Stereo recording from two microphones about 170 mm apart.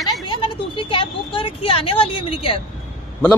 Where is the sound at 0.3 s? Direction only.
30° left (ahead or behind).